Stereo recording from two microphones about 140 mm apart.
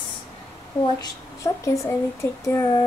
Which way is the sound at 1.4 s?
20° left (ahead or behind).